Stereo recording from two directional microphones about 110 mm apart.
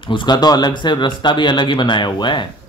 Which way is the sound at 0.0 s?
45° left (ahead or behind).